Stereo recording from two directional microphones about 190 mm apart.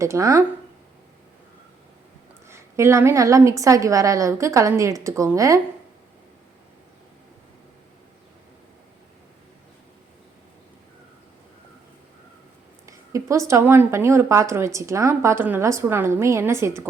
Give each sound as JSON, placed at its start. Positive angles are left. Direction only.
{"t": 0.0, "sound": "speech", "side_deg": -15}
{"t": 2.5, "sound": "speech", "side_deg": -15}
{"t": 12.8, "sound": "speech", "side_deg": -15}